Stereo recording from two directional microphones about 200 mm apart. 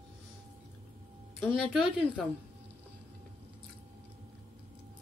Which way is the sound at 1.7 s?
Centre (ahead or behind).